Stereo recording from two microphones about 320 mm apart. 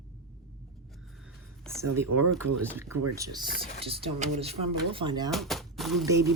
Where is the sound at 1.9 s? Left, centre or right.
Right.